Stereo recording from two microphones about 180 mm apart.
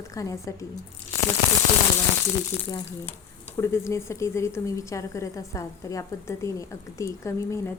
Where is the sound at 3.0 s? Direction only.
15° left (ahead or behind).